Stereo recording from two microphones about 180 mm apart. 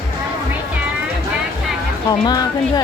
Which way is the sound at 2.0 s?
20° left (ahead or behind).